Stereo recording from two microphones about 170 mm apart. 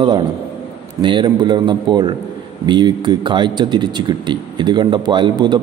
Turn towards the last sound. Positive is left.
turn(degrees=-25)  # may be behind; listen again after turning